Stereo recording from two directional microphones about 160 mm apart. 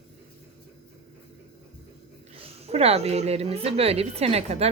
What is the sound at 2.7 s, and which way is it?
A woman's voice, 40° right (ahead or behind).